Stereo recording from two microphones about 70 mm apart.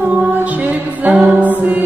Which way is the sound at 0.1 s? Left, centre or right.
Right.